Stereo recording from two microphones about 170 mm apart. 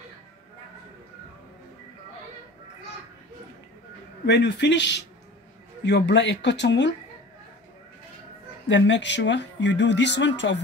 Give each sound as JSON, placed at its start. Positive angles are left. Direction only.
{"t": 4.3, "sound": "speech", "side_deg": 90}
{"t": 8.6, "sound": "speech", "side_deg": 90}